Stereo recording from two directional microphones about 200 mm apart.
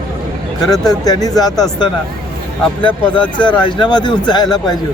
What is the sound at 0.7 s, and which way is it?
Speech, 20° left (ahead or behind).